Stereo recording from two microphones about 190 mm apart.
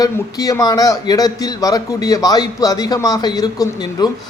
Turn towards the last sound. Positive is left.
turn(degrees=20)  # may be behind; listen again after turning